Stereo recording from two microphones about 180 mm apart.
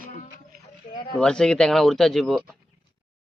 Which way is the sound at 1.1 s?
5° left (ahead or behind).